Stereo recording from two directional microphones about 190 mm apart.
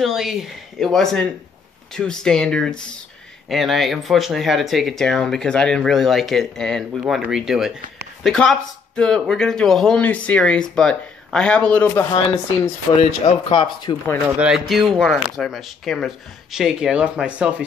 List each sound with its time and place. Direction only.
0.0 s speech: centre (ahead or behind)
13.0 s speech: 25° left (ahead or behind)
14.4 s speech: centre (ahead or behind)